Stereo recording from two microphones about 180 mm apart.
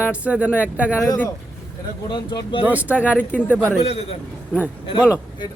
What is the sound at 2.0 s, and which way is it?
Speech, 25° left (ahead or behind).